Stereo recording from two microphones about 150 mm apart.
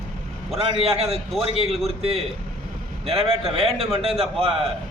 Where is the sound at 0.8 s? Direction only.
40° right (ahead or behind).